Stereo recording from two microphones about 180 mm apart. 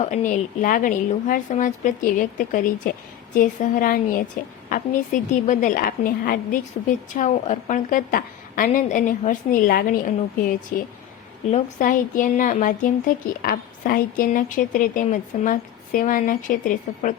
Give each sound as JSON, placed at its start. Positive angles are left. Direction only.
{"t": 0.0, "sound": "speech", "side_deg": 45}
{"t": 11.5, "sound": "speech", "side_deg": 45}